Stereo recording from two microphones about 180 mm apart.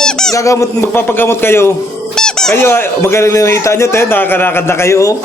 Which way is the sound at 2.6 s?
15° left (ahead or behind).